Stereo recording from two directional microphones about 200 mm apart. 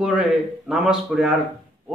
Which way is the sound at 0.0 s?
Centre (ahead or behind).